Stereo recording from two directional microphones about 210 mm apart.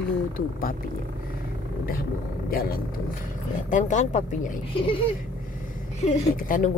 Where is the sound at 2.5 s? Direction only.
45° left (ahead or behind).